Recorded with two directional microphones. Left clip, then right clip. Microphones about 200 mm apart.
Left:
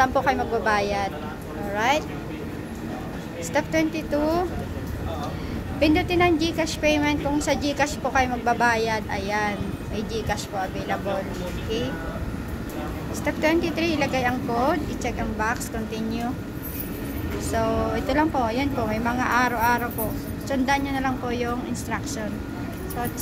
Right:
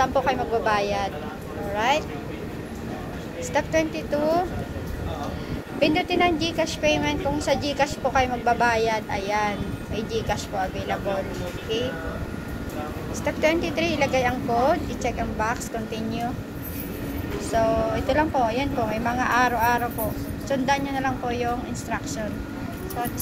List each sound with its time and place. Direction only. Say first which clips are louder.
0.0 s a woman's voice: left 1 dB; 30° left (ahead or behind)
3.5 s a woman's voice: even; 25° left (ahead or behind)
5.8 s a woman's voice: left 1 dB; 25° left (ahead or behind)
13.2 s a woman's voice: even; 20° left (ahead or behind)
17.5 s a woman's voice: right 3 dB; 25° left (ahead or behind)